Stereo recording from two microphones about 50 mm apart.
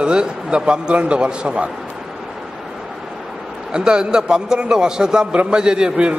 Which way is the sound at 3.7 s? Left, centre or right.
Centre.